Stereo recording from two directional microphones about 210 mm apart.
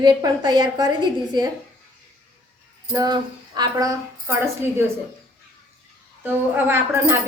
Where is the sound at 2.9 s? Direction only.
20° right (ahead or behind).